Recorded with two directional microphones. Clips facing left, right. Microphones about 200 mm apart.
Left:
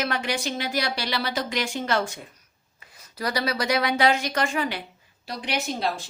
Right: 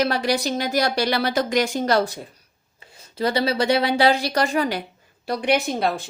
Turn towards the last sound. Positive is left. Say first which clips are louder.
# right 4 dB
turn(degrees=-55)  # may be behind; listen again after turning